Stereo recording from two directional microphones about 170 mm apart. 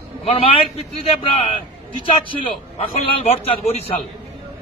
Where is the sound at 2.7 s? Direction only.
35° left (ahead or behind).